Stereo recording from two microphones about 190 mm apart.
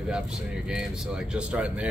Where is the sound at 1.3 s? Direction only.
5° right (ahead or behind).